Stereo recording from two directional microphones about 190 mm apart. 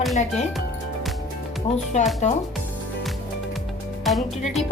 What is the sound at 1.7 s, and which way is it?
Speech, 35° left (ahead or behind).